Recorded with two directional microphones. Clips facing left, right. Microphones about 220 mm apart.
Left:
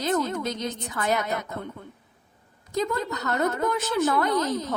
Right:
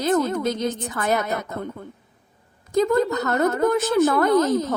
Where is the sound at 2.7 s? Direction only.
50° right (ahead or behind).